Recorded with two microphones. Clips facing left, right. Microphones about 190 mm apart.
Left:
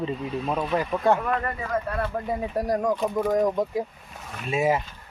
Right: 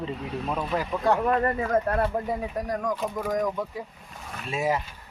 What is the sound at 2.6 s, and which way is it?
Speech, 35° left (ahead or behind).